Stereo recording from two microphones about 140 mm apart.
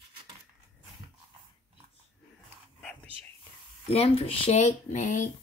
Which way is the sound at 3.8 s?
45° left (ahead or behind).